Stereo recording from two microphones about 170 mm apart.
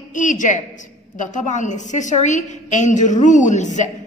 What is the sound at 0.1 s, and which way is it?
A woman's voice, 50° left (ahead or behind).